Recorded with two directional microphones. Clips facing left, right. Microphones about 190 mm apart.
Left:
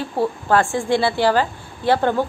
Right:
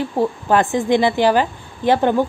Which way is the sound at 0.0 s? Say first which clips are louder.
Right 2 dB; 15° right (ahead or behind).